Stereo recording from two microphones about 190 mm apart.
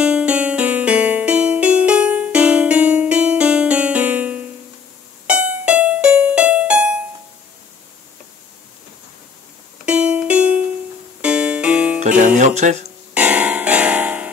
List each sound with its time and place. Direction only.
0.0 s music: 5° right (ahead or behind)
9.8 s music: 5° right (ahead or behind)
12.4 s speech: 40° right (ahead or behind)
13.1 s music: 5° right (ahead or behind)